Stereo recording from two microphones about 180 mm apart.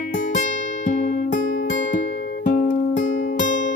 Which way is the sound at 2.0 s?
85° left.